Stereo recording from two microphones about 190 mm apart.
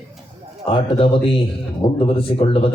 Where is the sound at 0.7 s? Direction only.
30° left (ahead or behind).